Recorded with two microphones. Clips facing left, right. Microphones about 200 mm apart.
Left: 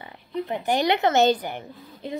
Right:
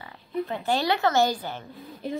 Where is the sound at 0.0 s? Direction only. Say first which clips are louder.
Even; 20° left (ahead or behind).